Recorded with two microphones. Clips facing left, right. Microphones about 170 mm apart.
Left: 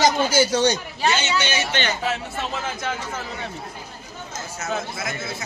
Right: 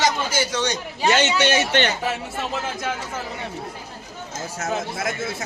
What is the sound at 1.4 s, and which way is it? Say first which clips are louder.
Speech: right 6 dB; 65° right (ahead or behind).